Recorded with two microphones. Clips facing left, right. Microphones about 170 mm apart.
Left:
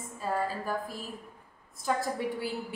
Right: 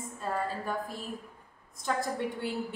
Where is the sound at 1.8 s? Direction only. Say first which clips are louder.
Left 1 dB; 5° left (ahead or behind).